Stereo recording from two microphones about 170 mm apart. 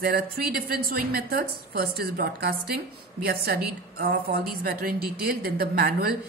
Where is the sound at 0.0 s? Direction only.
65° right (ahead or behind).